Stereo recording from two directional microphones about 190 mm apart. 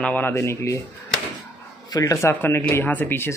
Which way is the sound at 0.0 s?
10° left (ahead or behind).